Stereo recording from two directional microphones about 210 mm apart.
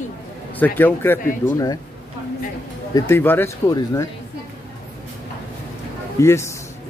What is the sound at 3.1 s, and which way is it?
A man's voice, 10° left (ahead or behind).